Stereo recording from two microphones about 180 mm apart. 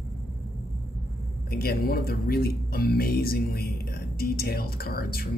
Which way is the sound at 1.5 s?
60° left (ahead or behind).